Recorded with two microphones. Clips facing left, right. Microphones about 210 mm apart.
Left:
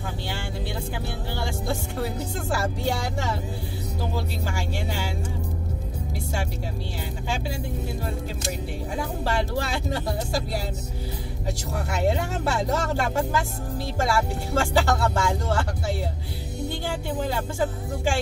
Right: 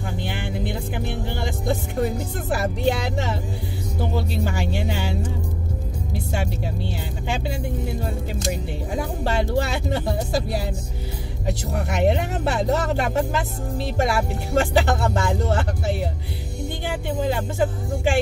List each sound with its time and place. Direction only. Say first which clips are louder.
0.2 s music: right 4 dB; 20° right (ahead or behind)
2.5 s speech: right 5 dB; 20° right (ahead or behind)
9.2 s speech: right 5 dB; 20° right (ahead or behind)
11.7 s speech: right 4 dB; 20° right (ahead or behind)